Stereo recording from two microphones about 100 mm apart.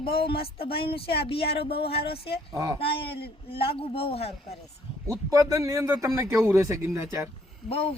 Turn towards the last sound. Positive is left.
turn(degrees=80)